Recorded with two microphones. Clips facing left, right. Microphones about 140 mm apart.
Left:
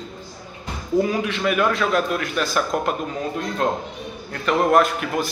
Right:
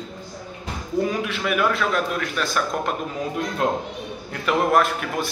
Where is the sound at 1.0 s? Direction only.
Centre (ahead or behind).